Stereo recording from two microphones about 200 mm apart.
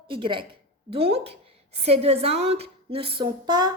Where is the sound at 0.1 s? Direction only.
25° right (ahead or behind).